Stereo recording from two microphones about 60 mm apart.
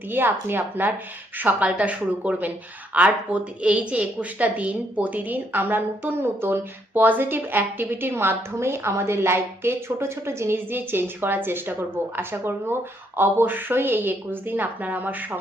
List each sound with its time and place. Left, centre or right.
0.1 s a woman's voice: right